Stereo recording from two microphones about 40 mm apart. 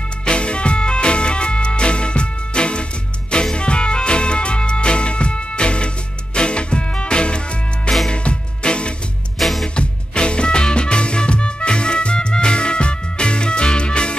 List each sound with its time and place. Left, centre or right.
0.2 s music: left
9.4 s music: centre
9.8 s music: left